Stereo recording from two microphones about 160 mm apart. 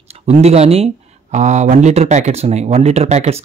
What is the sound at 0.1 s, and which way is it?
Speech, 40° right (ahead or behind).